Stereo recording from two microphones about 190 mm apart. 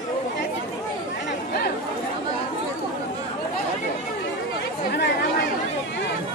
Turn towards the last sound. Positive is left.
turn(degrees=60)  # may be behind; listen again after turning